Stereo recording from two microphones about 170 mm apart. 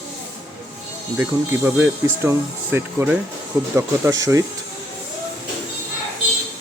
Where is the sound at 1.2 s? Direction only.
10° right (ahead or behind).